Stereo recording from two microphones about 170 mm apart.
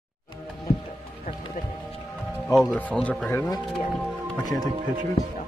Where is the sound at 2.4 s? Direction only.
5° left (ahead or behind).